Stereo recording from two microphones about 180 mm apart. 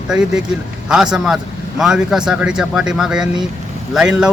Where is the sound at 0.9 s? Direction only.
5° right (ahead or behind).